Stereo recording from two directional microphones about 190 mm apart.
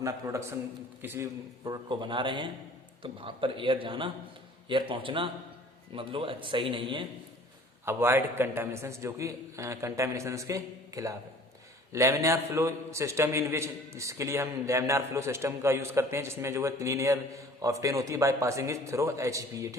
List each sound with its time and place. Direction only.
0.0 s a man's voice: 15° right (ahead or behind)
7.9 s a man's voice: 15° right (ahead or behind)